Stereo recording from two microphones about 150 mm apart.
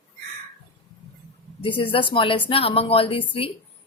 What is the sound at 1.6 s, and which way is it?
Speech, 35° left (ahead or behind).